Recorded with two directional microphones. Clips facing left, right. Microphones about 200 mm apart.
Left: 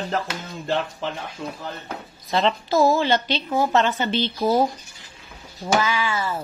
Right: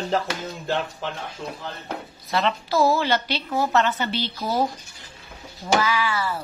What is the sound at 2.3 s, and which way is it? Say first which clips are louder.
A woman's voice: left 2 dB; 25° left (ahead or behind).